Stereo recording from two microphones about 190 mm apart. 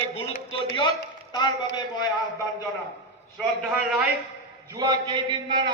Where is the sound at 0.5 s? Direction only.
25° left (ahead or behind).